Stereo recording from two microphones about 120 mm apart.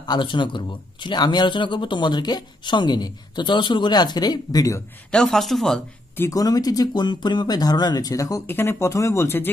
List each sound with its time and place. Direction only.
0.0 s speech: 40° left (ahead or behind)
5.1 s speech: 5° left (ahead or behind)
6.3 s speech: 30° left (ahead or behind)